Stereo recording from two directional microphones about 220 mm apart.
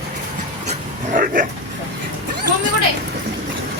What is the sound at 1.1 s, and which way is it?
Dog, 40° right (ahead or behind).